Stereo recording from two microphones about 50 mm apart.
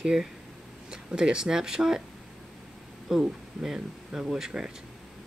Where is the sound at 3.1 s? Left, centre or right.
Centre.